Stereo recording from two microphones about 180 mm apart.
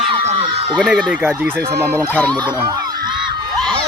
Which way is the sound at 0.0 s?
30° right (ahead or behind).